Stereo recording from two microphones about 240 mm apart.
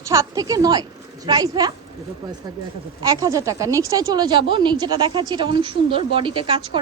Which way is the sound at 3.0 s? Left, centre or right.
Centre.